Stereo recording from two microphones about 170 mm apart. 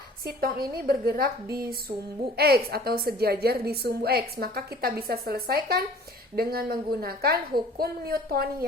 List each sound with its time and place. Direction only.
0.3 s a woman's voice: 65° right (ahead or behind)